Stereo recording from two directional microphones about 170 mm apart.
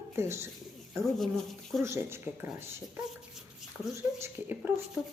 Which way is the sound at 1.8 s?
15° right (ahead or behind).